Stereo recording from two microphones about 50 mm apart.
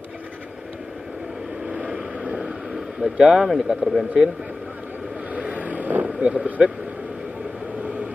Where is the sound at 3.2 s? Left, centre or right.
Centre.